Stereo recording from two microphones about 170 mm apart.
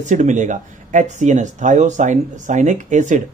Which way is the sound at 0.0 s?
45° right (ahead or behind).